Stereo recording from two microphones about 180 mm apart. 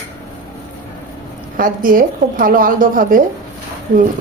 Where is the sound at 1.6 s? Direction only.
50° right (ahead or behind).